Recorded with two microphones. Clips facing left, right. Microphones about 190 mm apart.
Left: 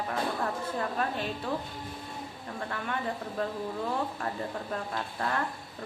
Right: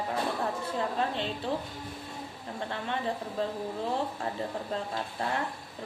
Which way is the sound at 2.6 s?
25° right (ahead or behind).